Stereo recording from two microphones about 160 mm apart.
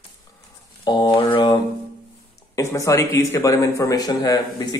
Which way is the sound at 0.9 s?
25° left (ahead or behind).